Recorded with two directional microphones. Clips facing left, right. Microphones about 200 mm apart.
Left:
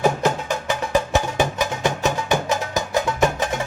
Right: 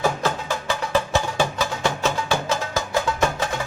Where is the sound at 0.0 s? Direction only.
20° left (ahead or behind).